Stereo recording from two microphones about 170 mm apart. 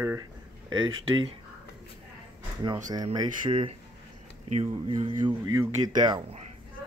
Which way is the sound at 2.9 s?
25° right (ahead or behind).